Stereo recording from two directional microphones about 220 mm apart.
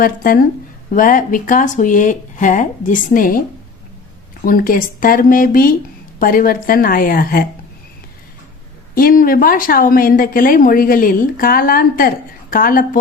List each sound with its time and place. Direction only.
0.0 s a woman's voice: 40° left (ahead or behind)
4.4 s a woman's voice: 40° left (ahead or behind)
9.0 s a woman's voice: 40° left (ahead or behind)